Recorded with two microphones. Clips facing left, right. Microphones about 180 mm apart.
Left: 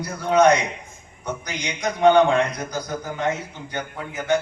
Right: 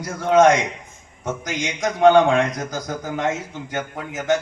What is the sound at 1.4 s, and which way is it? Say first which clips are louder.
A man's voice: right 3 dB; 90° right.